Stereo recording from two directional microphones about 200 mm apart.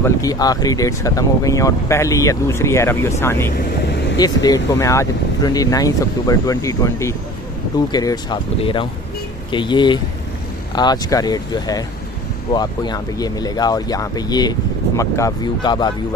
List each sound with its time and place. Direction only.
0.0 s speech: 15° left (ahead or behind)
3.5 s speech: 60° left (ahead or behind)
4.2 s speech: 20° left (ahead or behind)